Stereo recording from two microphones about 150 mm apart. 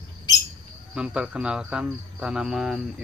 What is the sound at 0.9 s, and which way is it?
Speech, 5° right (ahead or behind).